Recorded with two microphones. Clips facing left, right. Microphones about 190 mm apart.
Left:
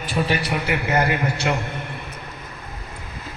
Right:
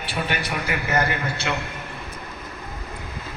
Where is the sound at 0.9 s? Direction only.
20° left (ahead or behind).